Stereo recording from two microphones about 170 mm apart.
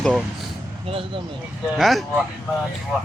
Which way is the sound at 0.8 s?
35° right (ahead or behind).